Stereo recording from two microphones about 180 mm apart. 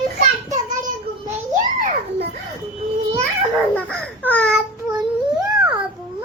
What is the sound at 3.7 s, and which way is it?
Speech, 5° left (ahead or behind).